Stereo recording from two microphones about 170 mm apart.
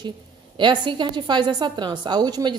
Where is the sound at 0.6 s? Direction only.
25° right (ahead or behind).